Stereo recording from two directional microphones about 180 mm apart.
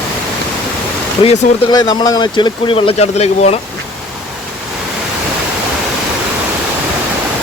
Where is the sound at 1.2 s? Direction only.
30° left (ahead or behind).